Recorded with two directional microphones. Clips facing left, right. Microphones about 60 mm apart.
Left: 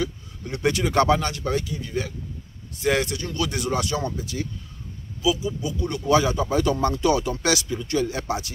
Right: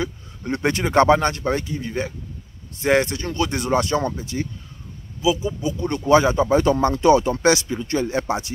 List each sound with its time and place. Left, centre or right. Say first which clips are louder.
0.0 s speech: right 1 dB; right